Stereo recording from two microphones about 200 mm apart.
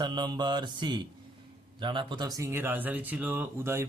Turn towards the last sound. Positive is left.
turn(degrees=-10)  # may be behind; listen again after turning